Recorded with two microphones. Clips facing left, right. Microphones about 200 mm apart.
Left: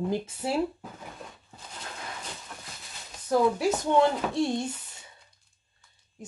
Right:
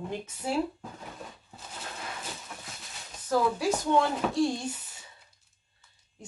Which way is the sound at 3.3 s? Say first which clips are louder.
Left 3 dB; 20° left (ahead or behind).